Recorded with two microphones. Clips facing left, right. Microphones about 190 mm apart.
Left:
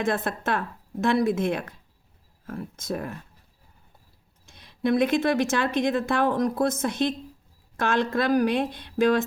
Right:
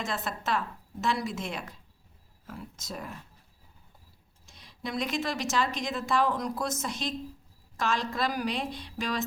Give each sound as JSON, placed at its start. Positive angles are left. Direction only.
{"t": 0.0, "sound": "a woman's voice", "side_deg": 55}
{"t": 4.4, "sound": "a woman's voice", "side_deg": 55}